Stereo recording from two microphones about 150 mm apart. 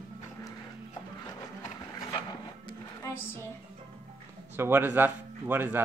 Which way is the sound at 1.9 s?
25° left (ahead or behind).